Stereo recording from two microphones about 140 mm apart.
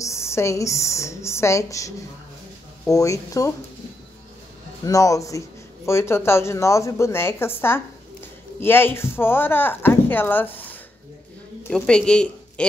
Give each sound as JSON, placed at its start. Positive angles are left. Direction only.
{"t": 0.0, "sound": "a woman's voice", "side_deg": 20}
{"t": 4.8, "sound": "a woman's voice", "side_deg": 25}
{"t": 11.7, "sound": "a woman's voice", "side_deg": 5}